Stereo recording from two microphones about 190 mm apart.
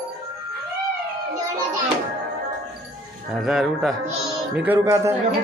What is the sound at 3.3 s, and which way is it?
Speech, centre (ahead or behind).